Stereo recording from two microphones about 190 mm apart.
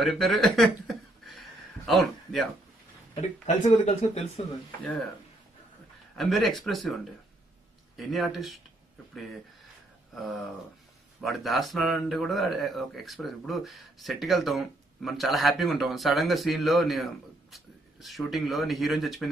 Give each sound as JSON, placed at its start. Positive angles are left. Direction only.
{"t": 0.0, "sound": "a sound", "side_deg": 0}
{"t": 3.2, "sound": "speech", "side_deg": 40}
{"t": 6.1, "sound": "speech", "side_deg": 0}
{"t": 10.1, "sound": "speech", "side_deg": 0}